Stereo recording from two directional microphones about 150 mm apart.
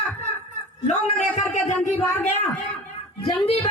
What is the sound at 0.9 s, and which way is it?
Speech, 50° left (ahead or behind).